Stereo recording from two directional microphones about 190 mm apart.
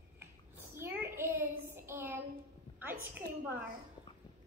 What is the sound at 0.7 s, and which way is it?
Child singing, 10° right (ahead or behind).